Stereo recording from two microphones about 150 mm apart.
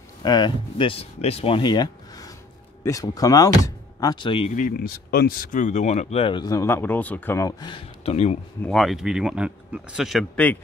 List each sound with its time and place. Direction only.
0.2 s speech: 30° left (ahead or behind)
4.5 s speech: 65° left (ahead or behind); by 6.5 s 35° left (ahead or behind)
6.5 s speech: 15° left (ahead or behind)
7.6 s speech: 40° left (ahead or behind)
8.6 s speech: centre (ahead or behind)